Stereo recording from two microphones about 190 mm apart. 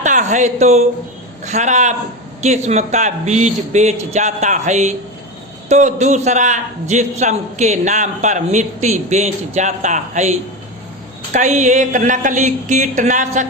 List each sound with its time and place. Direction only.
0.0 s a man's voice: 40° right (ahead or behind)